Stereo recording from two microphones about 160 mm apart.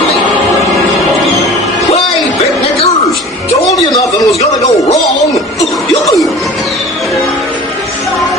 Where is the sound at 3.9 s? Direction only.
20° left (ahead or behind).